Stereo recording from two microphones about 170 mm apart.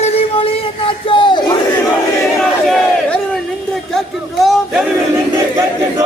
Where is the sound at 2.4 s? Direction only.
Centre (ahead or behind).